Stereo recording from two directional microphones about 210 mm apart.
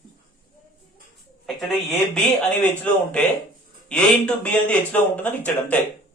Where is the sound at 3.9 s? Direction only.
5° left (ahead or behind).